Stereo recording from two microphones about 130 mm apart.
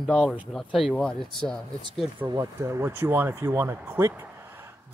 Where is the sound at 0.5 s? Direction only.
Centre (ahead or behind).